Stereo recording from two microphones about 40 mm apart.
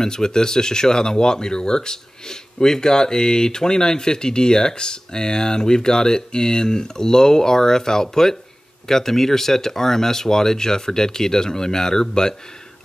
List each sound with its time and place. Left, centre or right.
0.0 s speech: centre